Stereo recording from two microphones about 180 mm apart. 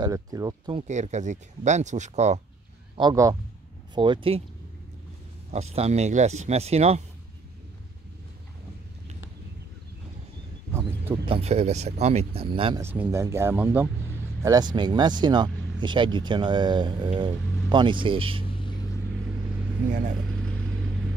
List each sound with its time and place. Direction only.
0.0 s speech: 20° right (ahead or behind)
0.8 s speech: 40° right (ahead or behind)
3.0 s speech: 20° right (ahead or behind)
5.5 s speech: 35° right (ahead or behind)
10.7 s a sound: 15° right (ahead or behind)
11.2 s speech: 35° right (ahead or behind)
12.8 s speech: 10° right (ahead or behind); by 18.4 s 30° right (ahead or behind)